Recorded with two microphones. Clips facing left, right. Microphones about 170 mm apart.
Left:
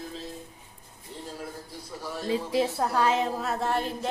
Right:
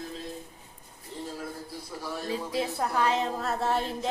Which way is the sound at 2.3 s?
20° left (ahead or behind).